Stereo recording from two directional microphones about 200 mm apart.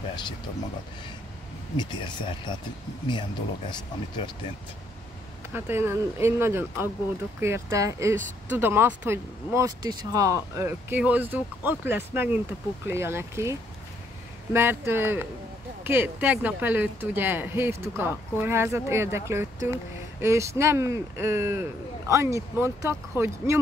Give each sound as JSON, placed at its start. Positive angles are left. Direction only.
{"t": 1.8, "sound": "speech", "side_deg": 25}
{"t": 5.5, "sound": "speech", "side_deg": -10}